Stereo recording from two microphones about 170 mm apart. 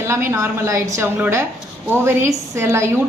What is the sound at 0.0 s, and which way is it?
A woman's voice, 15° right (ahead or behind).